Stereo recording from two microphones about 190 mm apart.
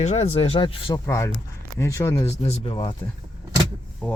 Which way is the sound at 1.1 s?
15° left (ahead or behind).